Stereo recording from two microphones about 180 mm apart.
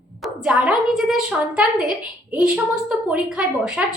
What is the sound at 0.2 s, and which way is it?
A woman's voice, 5° right (ahead or behind).